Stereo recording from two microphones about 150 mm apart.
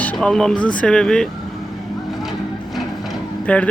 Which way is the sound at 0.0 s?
10° left (ahead or behind).